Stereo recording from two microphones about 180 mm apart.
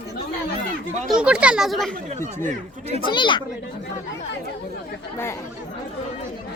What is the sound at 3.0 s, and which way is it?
Speech, 25° left (ahead or behind).